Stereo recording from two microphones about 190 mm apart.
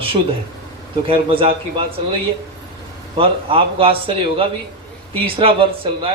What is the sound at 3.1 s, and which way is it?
A man's voice, 30° right (ahead or behind).